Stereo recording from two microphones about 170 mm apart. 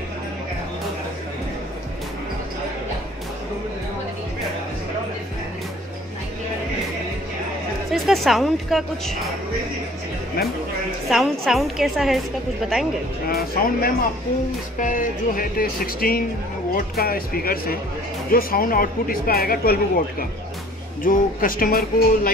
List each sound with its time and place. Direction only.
7.9 s a woman's voice: centre (ahead or behind)
11.1 s a woman's voice: centre (ahead or behind)
13.3 s speech: 60° left (ahead or behind)